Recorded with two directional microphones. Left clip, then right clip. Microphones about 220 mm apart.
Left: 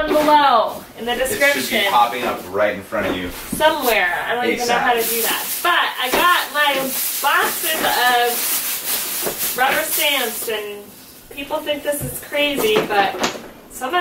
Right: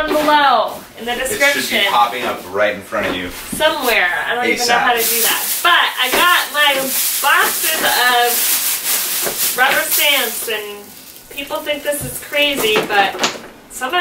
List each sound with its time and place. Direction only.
0.0 s speech: 5° left (ahead or behind)
12.4 s speech: 5° left (ahead or behind)